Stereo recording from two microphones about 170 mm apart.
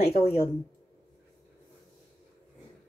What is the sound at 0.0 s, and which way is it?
Speech, 70° left (ahead or behind).